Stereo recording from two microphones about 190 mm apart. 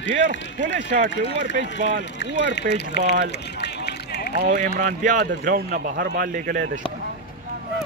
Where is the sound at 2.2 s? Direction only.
65° left (ahead or behind).